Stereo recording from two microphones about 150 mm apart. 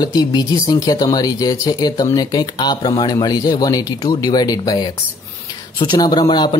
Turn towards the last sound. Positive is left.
turn(degrees=30)  # may be behind; listen again after turning